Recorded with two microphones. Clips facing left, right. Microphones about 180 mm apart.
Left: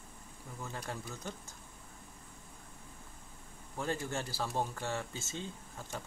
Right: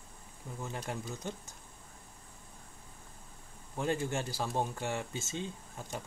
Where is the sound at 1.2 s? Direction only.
15° right (ahead or behind).